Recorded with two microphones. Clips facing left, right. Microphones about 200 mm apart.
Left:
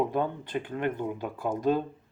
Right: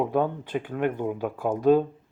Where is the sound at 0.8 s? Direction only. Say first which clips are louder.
Right 5 dB; 50° right (ahead or behind).